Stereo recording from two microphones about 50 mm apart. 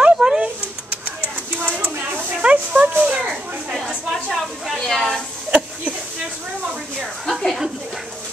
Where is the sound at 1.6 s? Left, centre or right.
Right.